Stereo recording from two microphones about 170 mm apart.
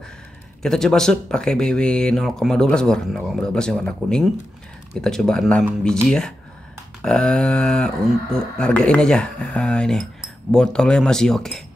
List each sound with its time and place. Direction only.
0.6 s speech: 5° left (ahead or behind)